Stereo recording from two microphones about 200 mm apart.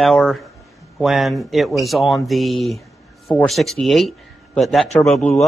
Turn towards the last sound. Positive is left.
turn(degrees=5)  # may be behind; listen again after turning